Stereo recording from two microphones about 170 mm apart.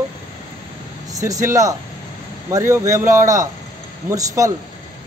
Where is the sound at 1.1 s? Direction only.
20° right (ahead or behind).